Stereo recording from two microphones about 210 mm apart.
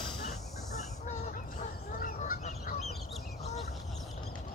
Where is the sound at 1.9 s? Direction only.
45° left (ahead or behind).